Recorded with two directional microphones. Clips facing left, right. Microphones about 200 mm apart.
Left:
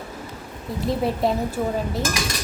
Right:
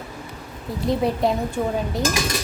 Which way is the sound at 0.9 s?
Centre (ahead or behind).